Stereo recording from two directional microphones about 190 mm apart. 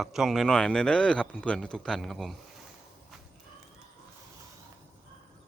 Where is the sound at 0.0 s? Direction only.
Centre (ahead or behind).